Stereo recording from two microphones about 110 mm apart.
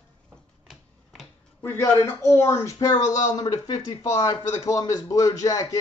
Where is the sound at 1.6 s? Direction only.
20° left (ahead or behind).